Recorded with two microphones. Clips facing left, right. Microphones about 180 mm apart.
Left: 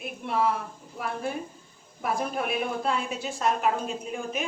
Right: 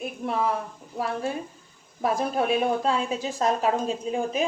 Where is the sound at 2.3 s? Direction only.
35° right (ahead or behind).